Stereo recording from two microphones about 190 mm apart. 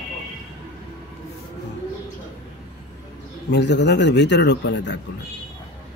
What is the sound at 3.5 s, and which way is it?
A man's voice, 65° left (ahead or behind).